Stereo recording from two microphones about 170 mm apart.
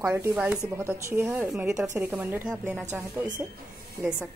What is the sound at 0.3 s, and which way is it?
A woman's voice, 5° right (ahead or behind).